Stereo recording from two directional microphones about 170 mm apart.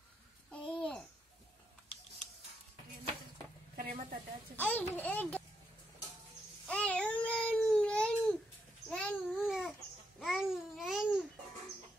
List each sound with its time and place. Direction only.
0.5 s babbling: 5° left (ahead or behind)
3.8 s a sound: 35° right (ahead or behind)
4.6 s a child's voice: 10° left (ahead or behind)
6.6 s babbling: 5° left (ahead or behind)